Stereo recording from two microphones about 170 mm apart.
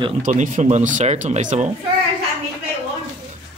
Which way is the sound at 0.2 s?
45° right (ahead or behind).